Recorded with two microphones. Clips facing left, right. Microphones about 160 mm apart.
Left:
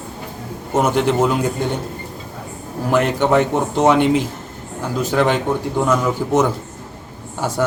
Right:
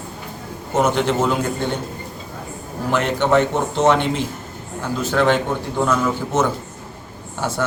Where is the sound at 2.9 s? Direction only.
10° left (ahead or behind).